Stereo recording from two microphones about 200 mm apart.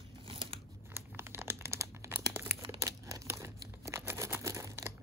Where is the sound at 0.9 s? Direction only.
10° right (ahead or behind).